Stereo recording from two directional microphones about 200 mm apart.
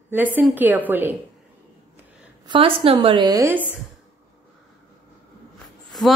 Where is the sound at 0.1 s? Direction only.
10° right (ahead or behind).